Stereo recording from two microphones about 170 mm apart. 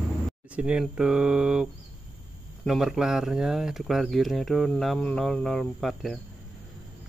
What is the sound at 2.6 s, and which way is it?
Speech, centre (ahead or behind).